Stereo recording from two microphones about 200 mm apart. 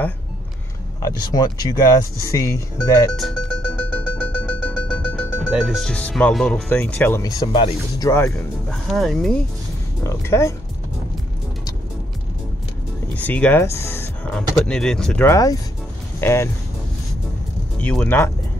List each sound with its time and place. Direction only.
1.0 s speech: 20° left (ahead or behind)
3.2 s music: 5° left (ahead or behind)
8.0 s speech: 15° left (ahead or behind)
8.8 s speech: centre (ahead or behind)
10.0 s speech: 15° left (ahead or behind)
13.1 s speech: 5° left (ahead or behind)
17.7 s speech: 5° left (ahead or behind)